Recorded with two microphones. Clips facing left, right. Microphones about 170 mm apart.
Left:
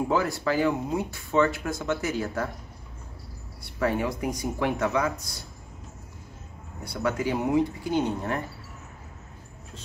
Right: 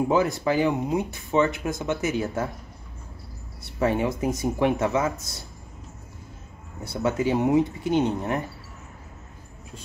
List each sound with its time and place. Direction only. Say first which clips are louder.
0.1 s speech: right 3 dB; 20° right (ahead or behind)
3.8 s speech: right 3 dB; 25° right (ahead or behind)
6.8 s speech: right 3 dB; 25° right (ahead or behind)